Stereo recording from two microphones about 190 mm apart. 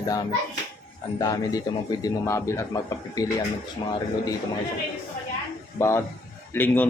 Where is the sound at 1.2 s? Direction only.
20° left (ahead or behind).